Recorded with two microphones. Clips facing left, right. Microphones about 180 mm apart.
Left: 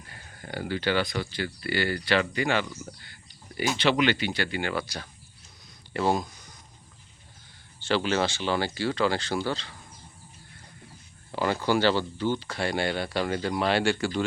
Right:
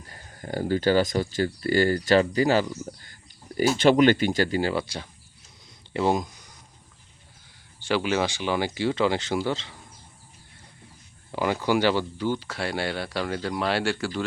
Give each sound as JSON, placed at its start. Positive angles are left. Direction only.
{"t": 0.0, "sound": "speech", "side_deg": -40}
{"t": 4.7, "sound": "speech", "side_deg": -25}
{"t": 7.8, "sound": "speech", "side_deg": -10}
{"t": 11.3, "sound": "speech", "side_deg": -15}